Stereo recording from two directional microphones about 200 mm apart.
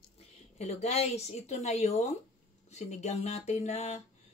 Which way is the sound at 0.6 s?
35° left (ahead or behind).